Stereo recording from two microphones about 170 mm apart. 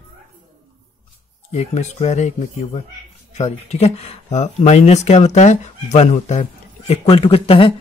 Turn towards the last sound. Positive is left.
turn(degrees=30)  # may be behind; listen again after turning